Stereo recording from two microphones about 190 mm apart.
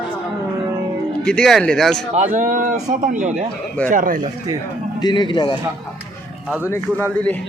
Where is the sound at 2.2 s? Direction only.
40° right (ahead or behind).